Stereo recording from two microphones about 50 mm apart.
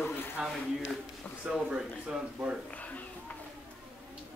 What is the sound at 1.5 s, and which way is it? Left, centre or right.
Speech, centre.